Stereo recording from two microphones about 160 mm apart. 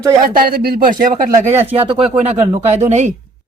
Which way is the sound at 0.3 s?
70° right (ahead or behind).